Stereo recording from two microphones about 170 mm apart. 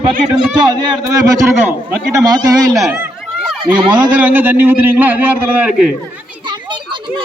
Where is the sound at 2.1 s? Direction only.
20° right (ahead or behind).